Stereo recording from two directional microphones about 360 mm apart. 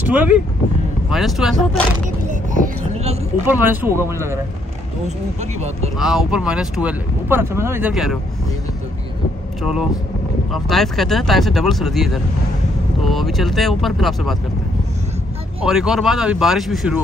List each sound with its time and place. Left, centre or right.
0.0 s speech: centre
2.5 s a sound: centre
3.4 s speech: centre
5.0 s speech: centre
5.9 s speech: centre
9.6 s speech: centre
15.6 s speech: centre